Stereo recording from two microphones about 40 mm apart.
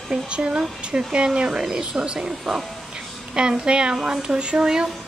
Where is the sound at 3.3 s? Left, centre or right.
Right.